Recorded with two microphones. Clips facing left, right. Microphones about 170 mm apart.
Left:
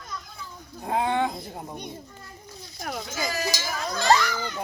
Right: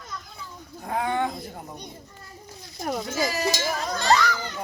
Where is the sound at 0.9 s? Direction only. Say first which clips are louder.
Left 1 dB; 20° left (ahead or behind).